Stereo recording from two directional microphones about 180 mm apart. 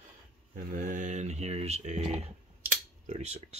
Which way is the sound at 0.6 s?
50° right (ahead or behind).